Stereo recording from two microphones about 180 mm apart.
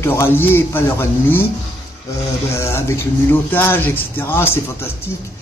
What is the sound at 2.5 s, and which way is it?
Speech, 15° left (ahead or behind).